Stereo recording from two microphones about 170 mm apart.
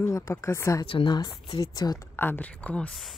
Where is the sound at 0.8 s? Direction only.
30° left (ahead or behind).